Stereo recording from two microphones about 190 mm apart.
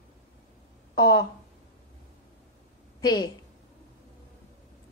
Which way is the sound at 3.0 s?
20° left (ahead or behind).